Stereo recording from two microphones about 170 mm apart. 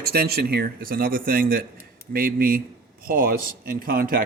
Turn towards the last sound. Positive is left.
turn(degrees=-55)  # may be behind; listen again after turning